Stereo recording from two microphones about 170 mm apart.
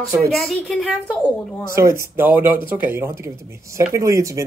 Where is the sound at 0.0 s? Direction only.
20° right (ahead or behind).